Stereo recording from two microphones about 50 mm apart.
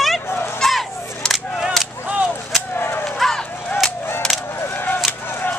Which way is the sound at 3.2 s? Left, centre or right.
Centre.